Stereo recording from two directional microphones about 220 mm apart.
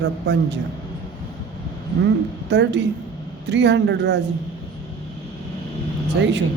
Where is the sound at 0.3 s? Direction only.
50° right (ahead or behind).